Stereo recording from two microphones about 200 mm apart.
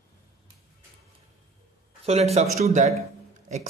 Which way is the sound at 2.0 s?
30° right (ahead or behind).